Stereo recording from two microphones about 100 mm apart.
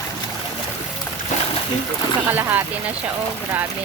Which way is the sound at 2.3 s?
20° right (ahead or behind).